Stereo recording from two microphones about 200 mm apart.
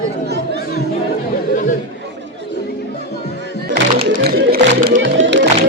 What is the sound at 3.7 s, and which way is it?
Music, 50° right (ahead or behind).